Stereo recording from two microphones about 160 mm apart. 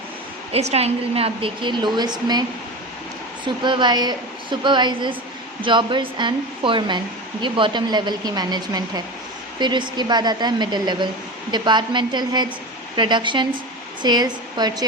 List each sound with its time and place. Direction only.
0.5 s a woman's voice: 40° right (ahead or behind); by 2.4 s 25° right (ahead or behind)
3.4 s a woman's voice: 30° right (ahead or behind)